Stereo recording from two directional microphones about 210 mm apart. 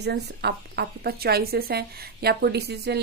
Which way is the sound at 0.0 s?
50° right (ahead or behind).